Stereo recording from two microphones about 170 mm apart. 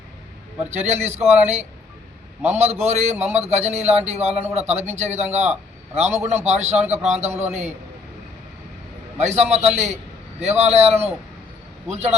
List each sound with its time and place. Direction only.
0.7 s speech: 40° right (ahead or behind)
9.1 s speech: 40° right (ahead or behind)